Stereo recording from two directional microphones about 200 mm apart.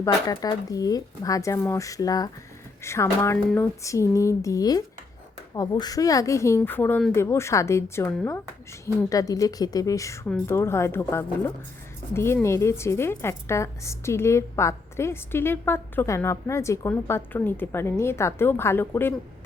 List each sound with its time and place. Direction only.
0.0 s a woman's voice: 20° left (ahead or behind)